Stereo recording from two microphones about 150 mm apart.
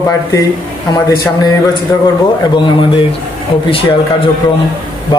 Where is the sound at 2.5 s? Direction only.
30° left (ahead or behind).